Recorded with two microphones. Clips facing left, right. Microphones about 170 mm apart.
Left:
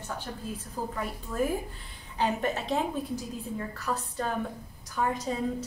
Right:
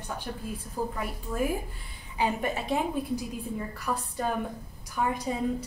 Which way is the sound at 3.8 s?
10° right (ahead or behind).